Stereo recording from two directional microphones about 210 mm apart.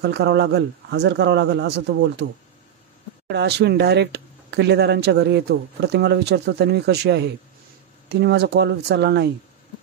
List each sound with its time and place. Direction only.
0.0 s speech: 50° right (ahead or behind)
3.3 s speech: 50° right (ahead or behind)